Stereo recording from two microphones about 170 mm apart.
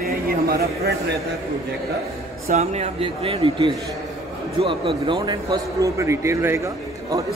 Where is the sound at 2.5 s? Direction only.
40° right (ahead or behind); by 6.6 s 15° right (ahead or behind).